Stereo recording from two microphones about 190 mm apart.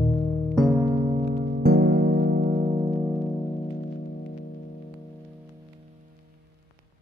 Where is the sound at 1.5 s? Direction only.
55° right (ahead or behind).